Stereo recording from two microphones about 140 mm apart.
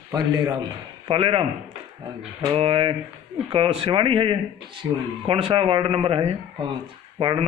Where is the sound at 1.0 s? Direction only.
40° right (ahead or behind).